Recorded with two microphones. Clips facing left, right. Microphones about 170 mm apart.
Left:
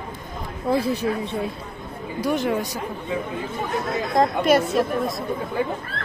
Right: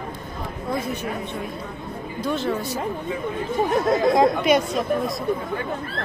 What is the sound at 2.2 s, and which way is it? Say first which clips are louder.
Speech: left 2 dB; 15° left (ahead or behind).